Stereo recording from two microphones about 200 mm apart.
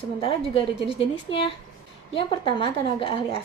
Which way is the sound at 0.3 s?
25° left (ahead or behind).